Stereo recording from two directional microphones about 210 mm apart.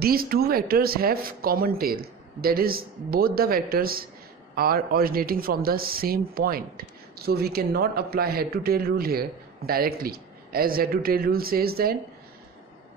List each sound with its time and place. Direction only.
0.0 s speech: 45° right (ahead or behind)